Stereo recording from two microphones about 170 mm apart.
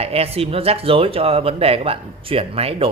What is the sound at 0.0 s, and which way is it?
Speech, 35° right (ahead or behind).